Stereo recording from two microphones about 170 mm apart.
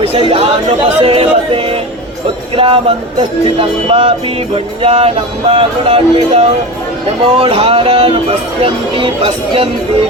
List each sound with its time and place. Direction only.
0.0 s speech: 35° right (ahead or behind)
1.0 s music: 35° right (ahead or behind)
2.6 s speech: 30° right (ahead or behind)